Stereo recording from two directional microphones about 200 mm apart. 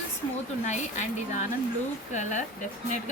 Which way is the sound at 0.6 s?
35° left (ahead or behind).